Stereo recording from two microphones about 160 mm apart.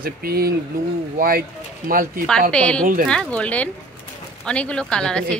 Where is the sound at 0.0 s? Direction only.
70° right (ahead or behind).